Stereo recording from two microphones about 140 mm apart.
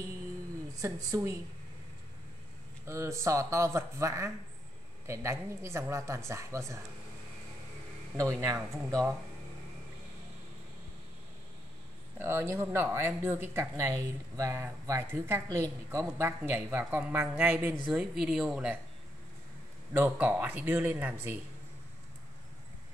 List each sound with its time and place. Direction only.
0.7 s speech: 25° right (ahead or behind)
2.8 s speech: 20° right (ahead or behind)
8.2 s speech: 20° right (ahead or behind)
12.2 s speech: 15° right (ahead or behind)
17.9 s speech: centre (ahead or behind)
19.9 s speech: 15° right (ahead or behind)